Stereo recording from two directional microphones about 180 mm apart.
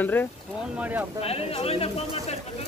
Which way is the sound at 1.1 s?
35° left (ahead or behind).